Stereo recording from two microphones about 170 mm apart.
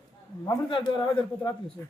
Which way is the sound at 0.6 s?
30° left (ahead or behind).